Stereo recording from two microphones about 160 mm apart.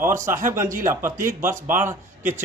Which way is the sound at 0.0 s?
15° right (ahead or behind).